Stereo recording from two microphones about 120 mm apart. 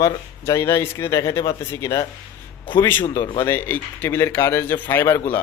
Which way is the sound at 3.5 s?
15° left (ahead or behind).